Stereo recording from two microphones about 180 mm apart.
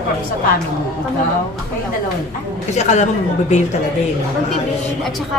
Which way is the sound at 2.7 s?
40° left (ahead or behind).